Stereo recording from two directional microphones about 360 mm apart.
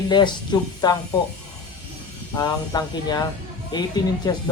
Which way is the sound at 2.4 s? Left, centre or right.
Centre.